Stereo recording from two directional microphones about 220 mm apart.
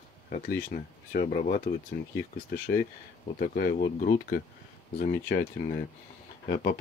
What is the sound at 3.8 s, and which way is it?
Speech, 35° left (ahead or behind).